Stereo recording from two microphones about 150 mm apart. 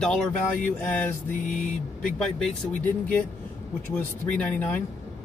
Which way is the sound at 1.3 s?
55° left (ahead or behind).